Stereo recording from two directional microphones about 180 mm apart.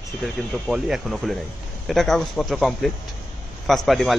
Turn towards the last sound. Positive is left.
turn(degrees=0)  # may be behind; listen again after turning